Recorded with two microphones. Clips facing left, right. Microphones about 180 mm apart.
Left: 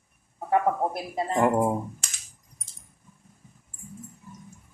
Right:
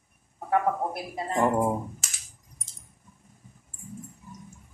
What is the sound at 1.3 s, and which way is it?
Speech, 10° left (ahead or behind).